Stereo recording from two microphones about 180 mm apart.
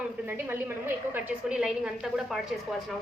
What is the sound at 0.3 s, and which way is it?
A woman's voice, 10° right (ahead or behind).